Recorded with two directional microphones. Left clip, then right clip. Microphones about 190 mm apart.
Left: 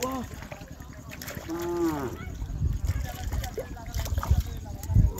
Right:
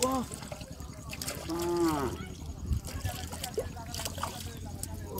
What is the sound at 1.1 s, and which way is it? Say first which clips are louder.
Trickle: left 1 dB; centre (ahead or behind).